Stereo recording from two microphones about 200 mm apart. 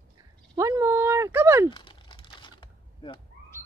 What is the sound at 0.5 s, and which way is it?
Speech, 15° right (ahead or behind).